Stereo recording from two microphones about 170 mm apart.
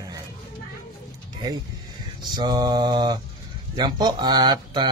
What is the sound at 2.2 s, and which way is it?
Speech, 25° right (ahead or behind).